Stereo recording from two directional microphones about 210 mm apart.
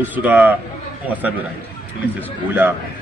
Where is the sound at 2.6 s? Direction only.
10° right (ahead or behind).